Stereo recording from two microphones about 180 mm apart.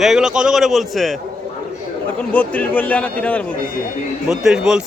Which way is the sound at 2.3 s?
5° left (ahead or behind).